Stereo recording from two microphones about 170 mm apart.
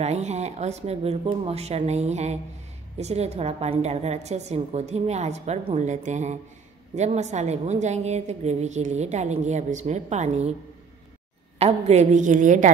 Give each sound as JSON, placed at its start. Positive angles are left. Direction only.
{"t": 0.0, "sound": "a woman's voice", "side_deg": -40}
{"t": 11.5, "sound": "a woman's voice", "side_deg": -40}